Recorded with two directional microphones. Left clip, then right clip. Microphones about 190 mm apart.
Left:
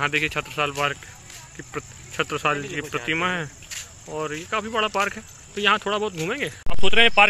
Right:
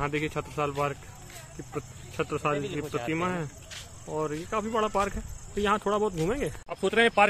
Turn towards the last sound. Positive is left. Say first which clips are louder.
# left 6 dB
turn(degrees=5)  # may be behind; listen again after turning